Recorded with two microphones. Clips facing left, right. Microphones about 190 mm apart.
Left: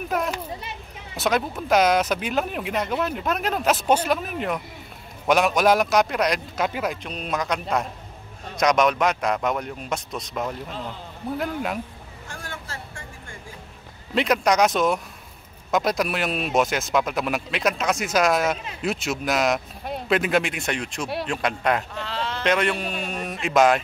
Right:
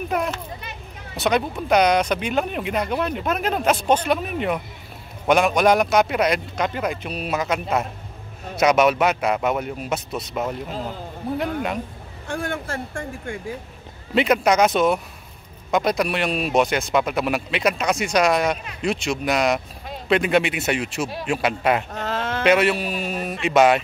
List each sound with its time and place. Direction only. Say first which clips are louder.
0.1 s speech: even; centre (ahead or behind)
12.3 s speech: right 11 dB; 60° right (ahead or behind)
14.1 s speech: right 3 dB; centre (ahead or behind)
21.9 s sheep: right 4 dB; 45° right (ahead or behind)
22.4 s speech: right 5 dB; 5° right (ahead or behind)